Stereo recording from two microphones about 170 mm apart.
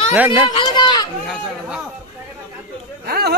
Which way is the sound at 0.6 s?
25° left (ahead or behind).